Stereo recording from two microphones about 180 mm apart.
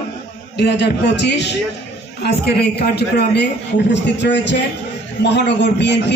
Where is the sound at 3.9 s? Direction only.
75° left (ahead or behind).